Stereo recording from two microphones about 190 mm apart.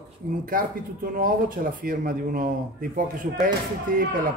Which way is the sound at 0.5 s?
50° right (ahead or behind).